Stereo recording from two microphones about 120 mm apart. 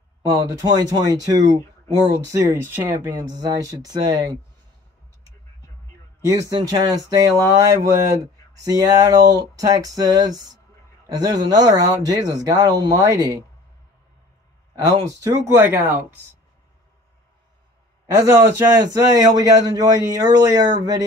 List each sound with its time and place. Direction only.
0.2 s speech: 30° right (ahead or behind)
3.3 s speech: 30° right (ahead or behind)
6.2 s speech: 30° right (ahead or behind)
14.8 s speech: 35° right (ahead or behind)
15.4 s speech: 20° right (ahead or behind)
18.1 s speech: 25° right (ahead or behind)